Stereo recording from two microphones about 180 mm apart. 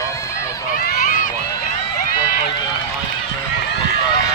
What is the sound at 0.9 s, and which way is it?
Speech, 50° left (ahead or behind).